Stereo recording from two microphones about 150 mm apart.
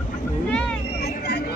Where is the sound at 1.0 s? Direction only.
90° left.